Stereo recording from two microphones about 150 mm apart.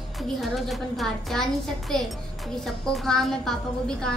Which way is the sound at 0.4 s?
Centre (ahead or behind).